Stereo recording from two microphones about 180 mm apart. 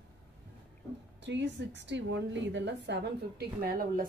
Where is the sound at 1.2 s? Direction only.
85° right.